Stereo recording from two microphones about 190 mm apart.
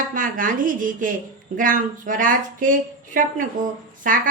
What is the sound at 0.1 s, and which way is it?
Speech, 45° right (ahead or behind).